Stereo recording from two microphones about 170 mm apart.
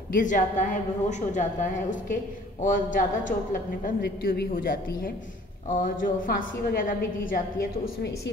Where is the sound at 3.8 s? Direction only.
60° left (ahead or behind).